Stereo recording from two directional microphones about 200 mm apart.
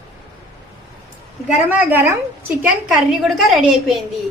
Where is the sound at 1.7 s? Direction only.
10° right (ahead or behind).